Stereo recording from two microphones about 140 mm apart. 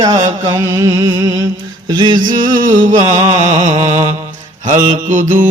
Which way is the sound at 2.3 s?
70° right (ahead or behind).